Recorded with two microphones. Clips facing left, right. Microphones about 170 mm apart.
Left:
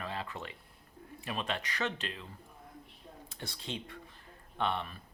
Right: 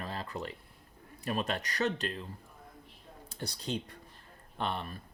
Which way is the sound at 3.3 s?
40° right (ahead or behind).